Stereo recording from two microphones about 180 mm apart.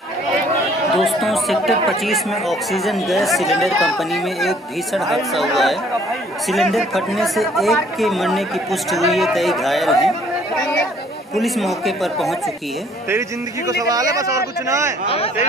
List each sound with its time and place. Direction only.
0.9 s speech: centre (ahead or behind)
11.3 s speech: centre (ahead or behind)
13.7 s speech: 20° right (ahead or behind)